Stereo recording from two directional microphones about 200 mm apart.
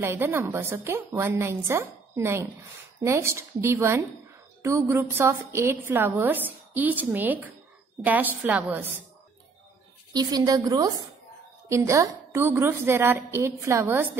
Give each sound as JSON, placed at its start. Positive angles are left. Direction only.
{"t": 0.0, "sound": "a woman's voice", "side_deg": -10}
{"t": 10.1, "sound": "a woman's voice", "side_deg": -20}